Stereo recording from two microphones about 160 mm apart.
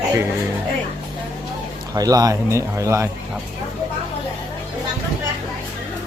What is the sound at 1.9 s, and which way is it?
Speech, 20° right (ahead or behind).